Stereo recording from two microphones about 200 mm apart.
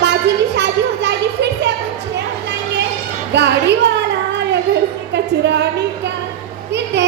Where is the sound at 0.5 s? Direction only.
60° right (ahead or behind).